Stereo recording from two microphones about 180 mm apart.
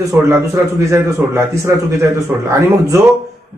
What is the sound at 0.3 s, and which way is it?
A man's voice, 15° right (ahead or behind).